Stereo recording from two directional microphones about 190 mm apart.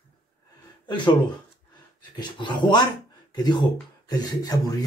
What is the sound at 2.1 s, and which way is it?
Speech, 25° left (ahead or behind).